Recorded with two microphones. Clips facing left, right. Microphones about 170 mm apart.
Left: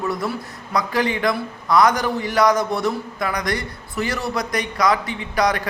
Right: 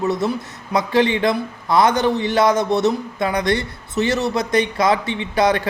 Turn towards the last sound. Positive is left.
turn(degrees=-25)  # may be behind; listen again after turning